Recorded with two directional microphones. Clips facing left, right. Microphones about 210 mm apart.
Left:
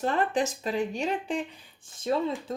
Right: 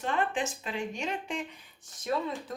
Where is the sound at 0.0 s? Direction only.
40° left (ahead or behind).